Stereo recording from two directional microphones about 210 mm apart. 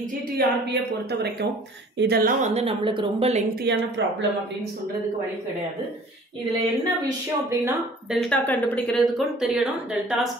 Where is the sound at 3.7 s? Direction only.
55° right (ahead or behind).